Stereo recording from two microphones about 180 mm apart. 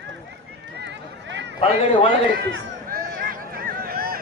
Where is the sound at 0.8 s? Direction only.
80° right.